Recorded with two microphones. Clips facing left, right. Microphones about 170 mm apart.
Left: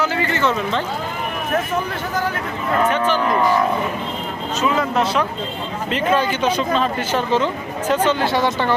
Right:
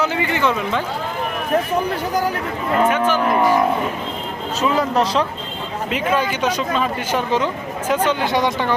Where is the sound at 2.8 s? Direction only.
10° right (ahead or behind).